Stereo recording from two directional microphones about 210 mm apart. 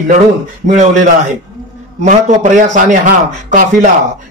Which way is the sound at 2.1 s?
35° right (ahead or behind).